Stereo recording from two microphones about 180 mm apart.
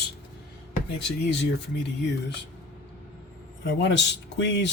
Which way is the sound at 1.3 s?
70° left (ahead or behind).